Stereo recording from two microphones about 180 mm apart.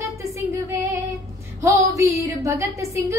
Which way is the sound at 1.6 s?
15° right (ahead or behind).